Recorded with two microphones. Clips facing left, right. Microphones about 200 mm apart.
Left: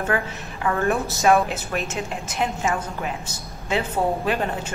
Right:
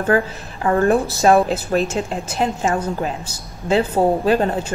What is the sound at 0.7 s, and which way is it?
A woman's voice, 35° right (ahead or behind).